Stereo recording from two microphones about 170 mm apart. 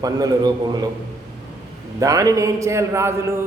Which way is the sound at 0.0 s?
20° right (ahead or behind).